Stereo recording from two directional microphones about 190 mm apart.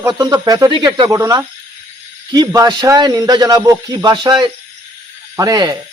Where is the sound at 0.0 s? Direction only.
20° right (ahead or behind).